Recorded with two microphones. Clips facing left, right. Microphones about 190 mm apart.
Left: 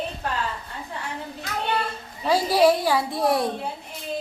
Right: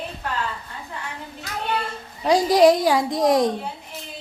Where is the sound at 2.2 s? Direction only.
15° right (ahead or behind).